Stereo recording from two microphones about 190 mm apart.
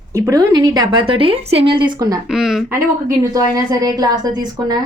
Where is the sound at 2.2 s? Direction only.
5° right (ahead or behind).